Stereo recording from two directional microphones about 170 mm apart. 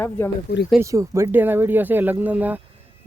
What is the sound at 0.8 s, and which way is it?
Speech, 20° right (ahead or behind).